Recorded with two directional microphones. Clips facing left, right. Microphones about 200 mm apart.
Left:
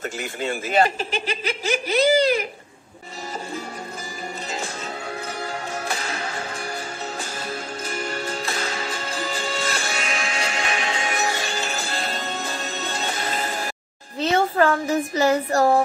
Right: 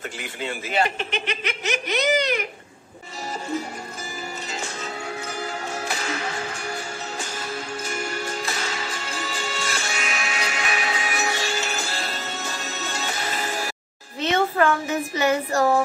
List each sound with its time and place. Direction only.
0.2 s speech: 45° left (ahead or behind)
7.9 s music: 35° left (ahead or behind)
14.2 s child singing: 35° left (ahead or behind)